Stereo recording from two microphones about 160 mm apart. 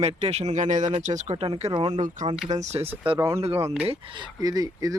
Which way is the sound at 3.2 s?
20° right (ahead or behind).